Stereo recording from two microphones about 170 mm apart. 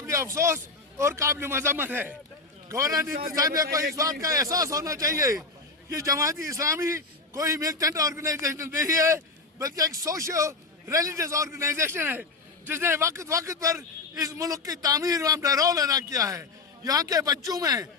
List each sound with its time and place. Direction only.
0.1 s a man's voice: 15° right (ahead or behind)
3.1 s a man's voice: 60° right (ahead or behind)
3.3 s a man's voice: 20° right (ahead or behind)